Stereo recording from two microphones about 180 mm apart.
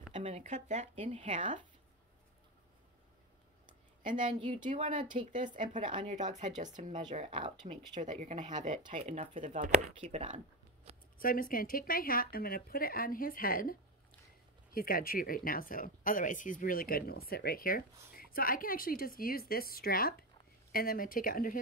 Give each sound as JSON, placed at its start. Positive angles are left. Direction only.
{"t": 0.1, "sound": "speech", "side_deg": -35}
{"t": 4.0, "sound": "a woman's voice", "side_deg": -45}
{"t": 4.4, "sound": "speech", "side_deg": -25}
{"t": 5.5, "sound": "speech", "side_deg": -45}
{"t": 5.9, "sound": "speech", "side_deg": -25}
{"t": 6.1, "sound": "speech", "side_deg": -45}
{"t": 7.3, "sound": "speech", "side_deg": -30}
{"t": 7.9, "sound": "speech", "side_deg": -45}
{"t": 11.1, "sound": "speech", "side_deg": 50}